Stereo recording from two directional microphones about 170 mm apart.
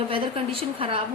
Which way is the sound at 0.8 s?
30° right (ahead or behind).